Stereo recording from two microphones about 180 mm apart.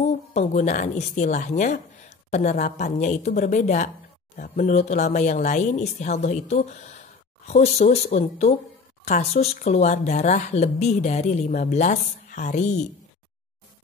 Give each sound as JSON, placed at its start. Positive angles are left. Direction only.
{"t": 0.0, "sound": "speech", "side_deg": 40}